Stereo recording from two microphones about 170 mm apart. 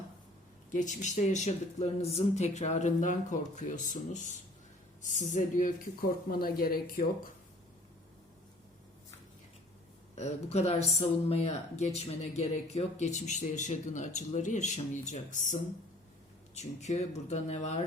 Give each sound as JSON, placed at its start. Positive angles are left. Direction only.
{"t": 0.7, "sound": "speech", "side_deg": 45}
{"t": 10.2, "sound": "speech", "side_deg": 40}
{"t": 16.6, "sound": "speech", "side_deg": 40}